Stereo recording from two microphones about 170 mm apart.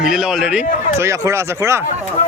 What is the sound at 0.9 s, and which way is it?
Speech, 15° right (ahead or behind).